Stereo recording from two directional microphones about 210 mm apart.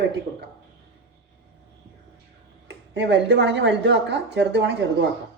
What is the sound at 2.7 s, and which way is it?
Speech, 55° right (ahead or behind).